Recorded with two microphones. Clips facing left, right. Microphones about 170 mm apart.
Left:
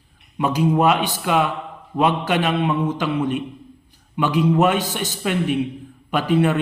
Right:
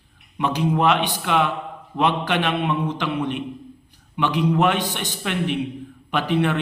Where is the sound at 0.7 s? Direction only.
10° left (ahead or behind).